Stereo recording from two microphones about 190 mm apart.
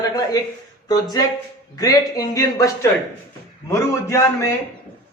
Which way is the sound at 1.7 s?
20° left (ahead or behind).